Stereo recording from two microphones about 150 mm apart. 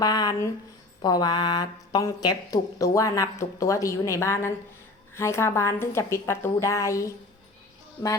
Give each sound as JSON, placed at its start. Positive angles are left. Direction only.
{"t": 0.0, "sound": "a woman's voice", "side_deg": 25}